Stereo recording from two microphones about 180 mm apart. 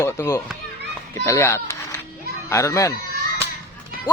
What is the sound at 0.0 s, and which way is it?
A child's voice, 15° left (ahead or behind).